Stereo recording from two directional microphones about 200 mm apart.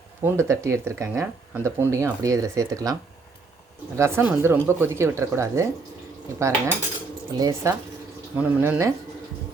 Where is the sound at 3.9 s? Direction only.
15° right (ahead or behind).